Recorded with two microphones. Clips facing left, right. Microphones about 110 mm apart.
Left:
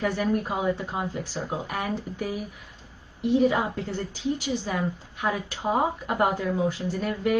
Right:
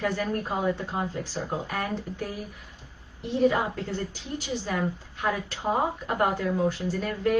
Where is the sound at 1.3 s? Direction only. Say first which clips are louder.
Even; 15° left (ahead or behind).